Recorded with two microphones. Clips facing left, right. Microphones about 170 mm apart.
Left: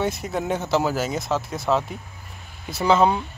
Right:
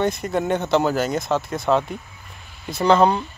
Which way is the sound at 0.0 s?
5° left (ahead or behind).